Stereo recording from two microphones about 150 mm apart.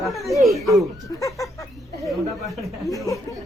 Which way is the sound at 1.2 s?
20° left (ahead or behind).